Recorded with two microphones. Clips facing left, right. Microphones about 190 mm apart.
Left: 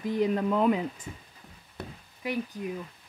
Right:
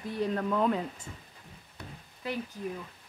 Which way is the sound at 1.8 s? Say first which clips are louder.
Left 6 dB; 60° left (ahead or behind).